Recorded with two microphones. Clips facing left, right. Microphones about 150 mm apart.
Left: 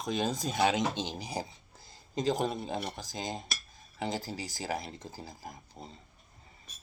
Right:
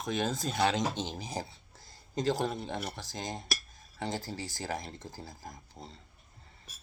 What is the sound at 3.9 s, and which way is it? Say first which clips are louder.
Speech: left 1 dB; 15° left (ahead or behind).